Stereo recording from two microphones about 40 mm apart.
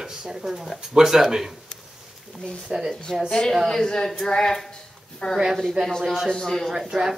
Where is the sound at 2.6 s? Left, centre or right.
Centre.